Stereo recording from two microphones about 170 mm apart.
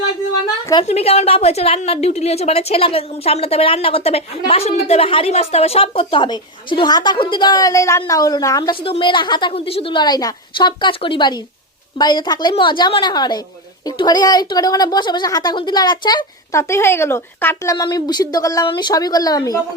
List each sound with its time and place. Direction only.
0.9 s a woman's voice: 40° left (ahead or behind); by 19.5 s 20° left (ahead or behind)